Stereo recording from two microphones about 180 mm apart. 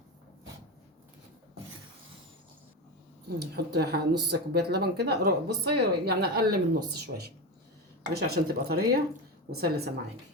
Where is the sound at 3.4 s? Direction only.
65° right (ahead or behind).